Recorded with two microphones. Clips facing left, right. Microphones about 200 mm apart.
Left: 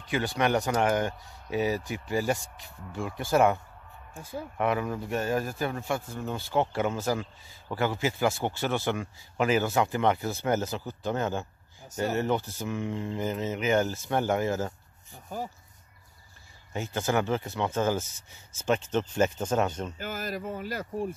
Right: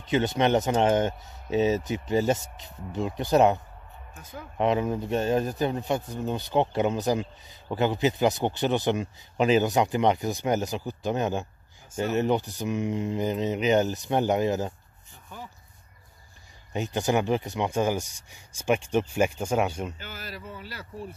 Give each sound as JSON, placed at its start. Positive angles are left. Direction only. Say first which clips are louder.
{"t": 0.0, "sound": "a man's voice", "louder": "right 4 dB", "side_deg": -20}
{"t": 4.2, "sound": "speech", "louder": "left 5 dB", "side_deg": 30}
{"t": 4.6, "sound": "a man's voice", "louder": "right 4 dB", "side_deg": -20}
{"t": 15.2, "sound": "speech", "louder": "left 7 dB", "side_deg": 40}
{"t": 16.7, "sound": "speech", "louder": "right 3 dB", "side_deg": -15}
{"t": 20.0, "sound": "speech", "louder": "left 6 dB", "side_deg": 45}